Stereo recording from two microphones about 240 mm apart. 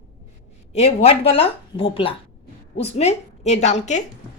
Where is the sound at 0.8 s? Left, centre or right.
Left.